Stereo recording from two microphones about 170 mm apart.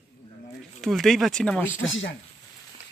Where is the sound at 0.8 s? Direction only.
Centre (ahead or behind).